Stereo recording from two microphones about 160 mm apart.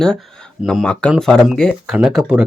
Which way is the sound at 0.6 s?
Centre (ahead or behind).